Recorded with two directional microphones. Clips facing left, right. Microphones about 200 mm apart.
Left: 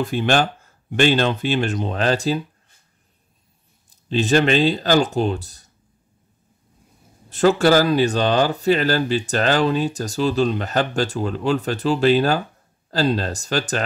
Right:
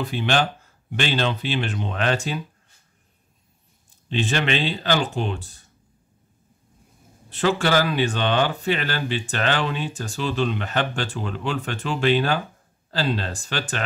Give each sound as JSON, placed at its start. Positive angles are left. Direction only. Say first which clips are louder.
{"t": 0.0, "sound": "speech", "louder": "left 4 dB", "side_deg": 45}
{"t": 3.9, "sound": "speech", "louder": "left 7 dB", "side_deg": 40}
{"t": 7.2, "sound": "speech", "louder": "left 6 dB", "side_deg": 45}